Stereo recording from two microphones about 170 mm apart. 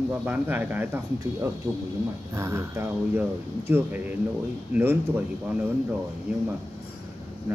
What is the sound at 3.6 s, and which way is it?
Speech, 10° right (ahead or behind).